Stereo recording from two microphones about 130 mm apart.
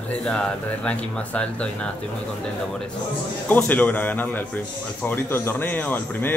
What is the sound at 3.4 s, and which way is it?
Speech, 15° left (ahead or behind).